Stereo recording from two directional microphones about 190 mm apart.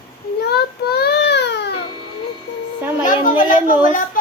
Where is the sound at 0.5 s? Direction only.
55° left (ahead or behind).